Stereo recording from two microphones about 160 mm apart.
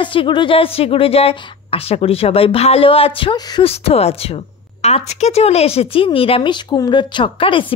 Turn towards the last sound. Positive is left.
turn(degrees=35)  # may be behind; listen again after turning